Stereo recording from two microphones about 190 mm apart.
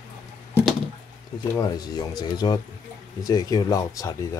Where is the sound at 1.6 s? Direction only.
20° left (ahead or behind).